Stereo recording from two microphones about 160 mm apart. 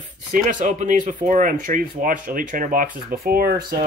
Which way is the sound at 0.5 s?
55° right (ahead or behind).